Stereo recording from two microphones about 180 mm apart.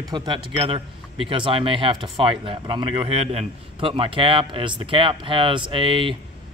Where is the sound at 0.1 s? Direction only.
25° right (ahead or behind).